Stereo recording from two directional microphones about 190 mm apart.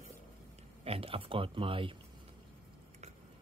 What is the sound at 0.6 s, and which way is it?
Speech, 30° right (ahead or behind).